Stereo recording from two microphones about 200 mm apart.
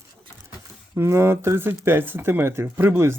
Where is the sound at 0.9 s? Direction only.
15° right (ahead or behind).